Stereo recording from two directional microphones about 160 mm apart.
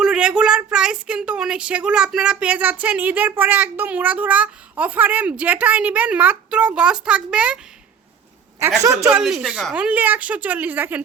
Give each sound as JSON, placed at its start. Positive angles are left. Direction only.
{"t": 0.0, "sound": "a woman's voice", "side_deg": -5}
{"t": 8.8, "sound": "a woman's voice", "side_deg": -20}
{"t": 9.2, "sound": "a woman's voice", "side_deg": -5}